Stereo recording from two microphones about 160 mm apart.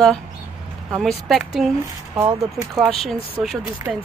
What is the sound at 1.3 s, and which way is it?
Speech, centre (ahead or behind).